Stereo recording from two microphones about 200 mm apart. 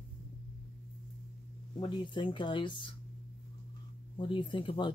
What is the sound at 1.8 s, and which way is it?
Speech, 25° left (ahead or behind).